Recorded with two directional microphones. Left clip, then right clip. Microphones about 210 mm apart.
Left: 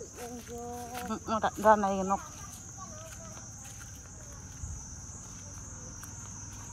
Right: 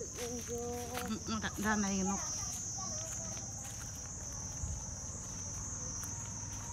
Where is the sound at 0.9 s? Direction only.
Centre (ahead or behind).